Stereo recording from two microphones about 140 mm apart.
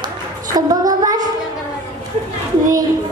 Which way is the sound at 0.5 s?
25° right (ahead or behind).